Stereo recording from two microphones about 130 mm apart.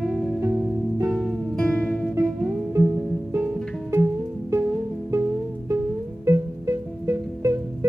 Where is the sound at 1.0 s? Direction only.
Centre (ahead or behind).